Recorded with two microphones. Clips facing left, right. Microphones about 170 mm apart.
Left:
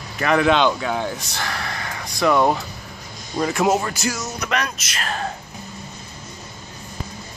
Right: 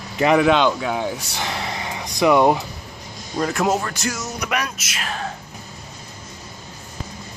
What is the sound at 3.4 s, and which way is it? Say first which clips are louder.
Speech: left 1 dB; centre (ahead or behind).